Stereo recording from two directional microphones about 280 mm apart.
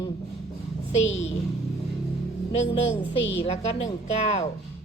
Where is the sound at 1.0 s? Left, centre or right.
Left.